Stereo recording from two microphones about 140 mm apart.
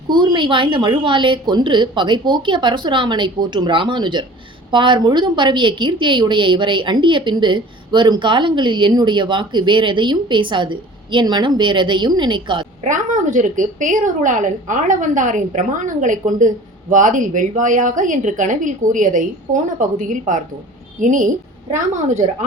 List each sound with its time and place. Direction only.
0.1 s a woman's voice: 30° right (ahead or behind)
12.8 s a woman's voice: 65° right (ahead or behind)